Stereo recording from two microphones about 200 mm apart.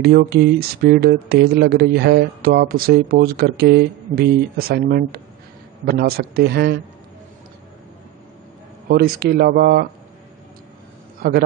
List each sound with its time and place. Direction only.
0.0 s speech: 50° right (ahead or behind)
8.8 s speech: 50° right (ahead or behind)